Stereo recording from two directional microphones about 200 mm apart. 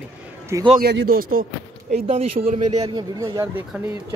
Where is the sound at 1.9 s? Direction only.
35° right (ahead or behind).